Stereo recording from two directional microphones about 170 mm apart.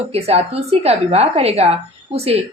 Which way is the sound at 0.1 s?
35° right (ahead or behind).